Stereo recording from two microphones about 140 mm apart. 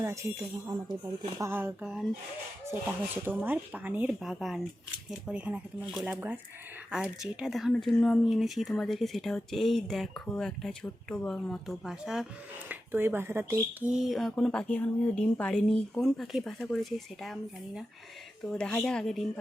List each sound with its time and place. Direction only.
0.0 s speech: 20° right (ahead or behind)
1.4 s speech: 15° right (ahead or behind)
3.2 s speech: 15° right (ahead or behind)
12.6 s speech: 15° right (ahead or behind); by 17.3 s centre (ahead or behind)
18.5 s speech: 5° left (ahead or behind)